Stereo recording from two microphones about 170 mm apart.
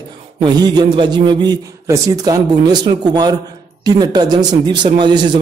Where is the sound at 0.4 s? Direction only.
25° right (ahead or behind).